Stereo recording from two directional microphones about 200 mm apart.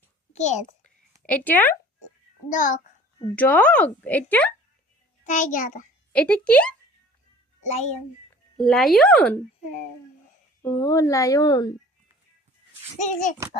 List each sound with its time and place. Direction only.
0.3 s a child's voice: 35° left (ahead or behind)
1.3 s a woman's voice: 10° left (ahead or behind)
2.5 s a child's voice: 40° left (ahead or behind)
3.2 s a woman's voice: 10° left (ahead or behind)
5.2 s a child's voice: 40° left (ahead or behind)
6.1 s speech: 5° left (ahead or behind)
7.6 s a child's voice: 35° left (ahead or behind)
8.5 s speech: centre (ahead or behind)
10.6 s a woman's voice: 15° left (ahead or behind)
13.0 s a child's voice: 35° left (ahead or behind)